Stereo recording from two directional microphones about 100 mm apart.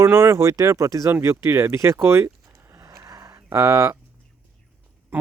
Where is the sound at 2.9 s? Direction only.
40° right (ahead or behind).